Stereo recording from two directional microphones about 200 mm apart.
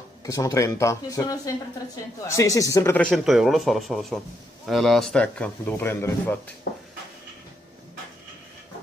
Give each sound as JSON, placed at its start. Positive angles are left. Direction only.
{"t": 0.2, "sound": "speech", "side_deg": 15}